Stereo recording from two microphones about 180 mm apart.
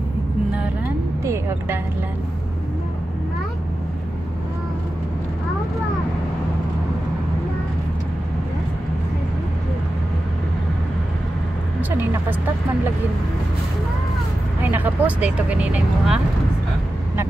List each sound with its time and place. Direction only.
1.2 s vehicle: 15° right (ahead or behind)
14.6 s speech: 10° right (ahead or behind)